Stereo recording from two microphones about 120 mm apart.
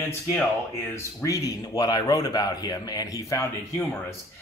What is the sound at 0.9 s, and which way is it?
Speech, 15° left (ahead or behind).